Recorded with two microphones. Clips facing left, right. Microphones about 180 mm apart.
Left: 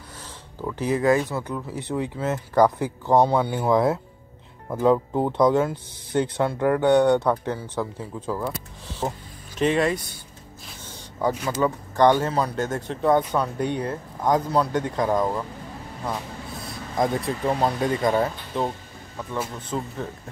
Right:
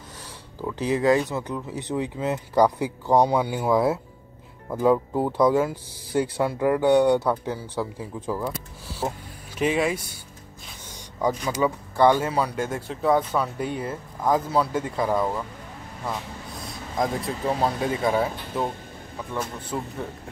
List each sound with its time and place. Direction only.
0.7 s speech: 15° right (ahead or behind)
9.6 s speech: 10° right (ahead or behind)
11.5 s speech: 10° right (ahead or behind)
16.6 s speech: centre (ahead or behind)
19.1 s speech: 5° left (ahead or behind)
19.7 s speech: 5° right (ahead or behind)